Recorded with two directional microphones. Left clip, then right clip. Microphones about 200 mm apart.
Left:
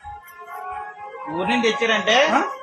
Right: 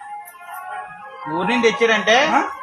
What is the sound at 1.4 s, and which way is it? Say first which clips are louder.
Speech: right 3 dB; 35° right (ahead or behind).